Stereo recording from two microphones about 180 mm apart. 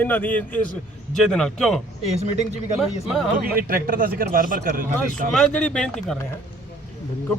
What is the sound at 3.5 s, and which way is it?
A man's voice, 50° right (ahead or behind).